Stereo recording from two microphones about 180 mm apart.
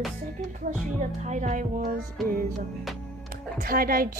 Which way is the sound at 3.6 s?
55° right (ahead or behind).